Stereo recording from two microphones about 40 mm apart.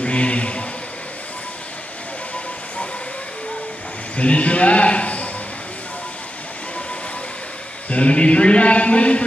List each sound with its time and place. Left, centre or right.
0.0 s a sound: left
4.2 s a man's voice: left
7.9 s speech: left